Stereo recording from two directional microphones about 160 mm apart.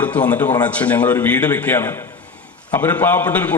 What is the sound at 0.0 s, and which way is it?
A man's voice, 10° left (ahead or behind).